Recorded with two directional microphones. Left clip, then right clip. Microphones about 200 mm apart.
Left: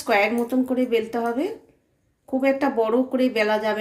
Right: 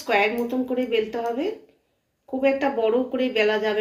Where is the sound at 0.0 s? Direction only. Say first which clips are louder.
Left 1 dB; 65° left (ahead or behind).